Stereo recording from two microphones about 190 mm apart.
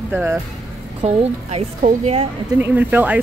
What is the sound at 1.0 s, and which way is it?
A woman's voice, 35° right (ahead or behind).